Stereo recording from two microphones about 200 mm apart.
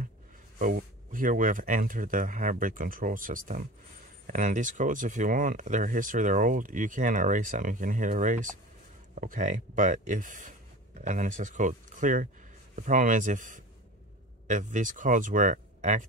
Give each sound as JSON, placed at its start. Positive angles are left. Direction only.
{"t": 0.6, "sound": "speech", "side_deg": -40}